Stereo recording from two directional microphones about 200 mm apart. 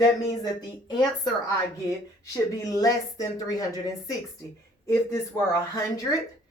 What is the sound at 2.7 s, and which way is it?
Speech, 20° left (ahead or behind).